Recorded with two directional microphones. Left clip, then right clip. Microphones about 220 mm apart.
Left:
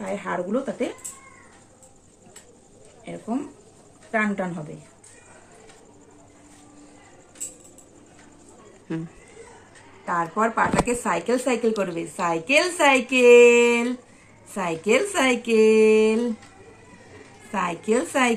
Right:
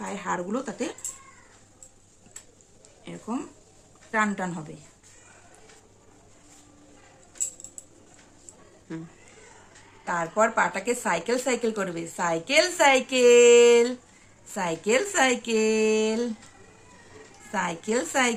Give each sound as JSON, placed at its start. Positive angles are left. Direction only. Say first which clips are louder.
{"t": 0.0, "sound": "speech", "louder": "left 3 dB", "side_deg": -50}
{"t": 3.0, "sound": "speech", "louder": "left 4 dB", "side_deg": -50}
{"t": 10.1, "sound": "speech", "louder": "left 1 dB", "side_deg": -45}
{"t": 12.5, "sound": "speech", "louder": "left 1 dB", "side_deg": -55}
{"t": 15.5, "sound": "a sound", "louder": "left 10 dB", "side_deg": -40}
{"t": 15.9, "sound": "a sound", "louder": "left 6 dB", "side_deg": -55}
{"t": 17.5, "sound": "speech", "louder": "left 4 dB", "side_deg": -50}